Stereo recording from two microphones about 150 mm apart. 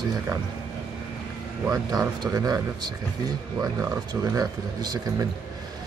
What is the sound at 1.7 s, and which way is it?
Speech, 25° right (ahead or behind).